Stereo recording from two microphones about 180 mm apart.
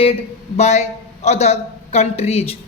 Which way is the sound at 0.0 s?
35° left (ahead or behind).